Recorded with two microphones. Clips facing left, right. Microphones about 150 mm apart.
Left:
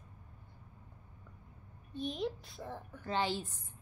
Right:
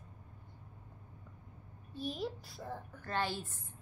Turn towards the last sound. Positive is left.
turn(degrees=15)  # may be behind; listen again after turning